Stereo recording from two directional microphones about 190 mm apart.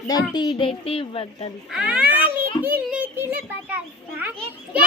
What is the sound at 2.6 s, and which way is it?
Children playing, 10° right (ahead or behind).